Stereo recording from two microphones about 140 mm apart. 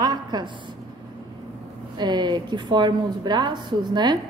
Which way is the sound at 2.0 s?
30° right (ahead or behind).